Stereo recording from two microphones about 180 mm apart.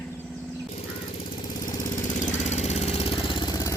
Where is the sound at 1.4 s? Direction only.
45° left (ahead or behind).